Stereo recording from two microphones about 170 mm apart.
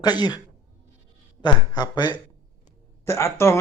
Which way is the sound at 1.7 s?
25° left (ahead or behind).